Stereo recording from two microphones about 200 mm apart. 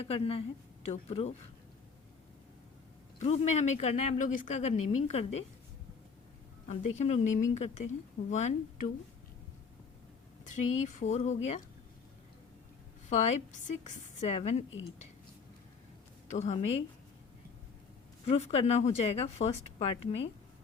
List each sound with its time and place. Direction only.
0.0 s a woman's voice: 30° left (ahead or behind)
3.2 s a woman's voice: 35° left (ahead or behind)
6.7 s a woman's voice: 35° left (ahead or behind)
10.4 s a woman's voice: 40° left (ahead or behind)
13.1 s a woman's voice: 35° left (ahead or behind)
16.3 s a woman's voice: 35° left (ahead or behind)
18.3 s a woman's voice: 30° left (ahead or behind)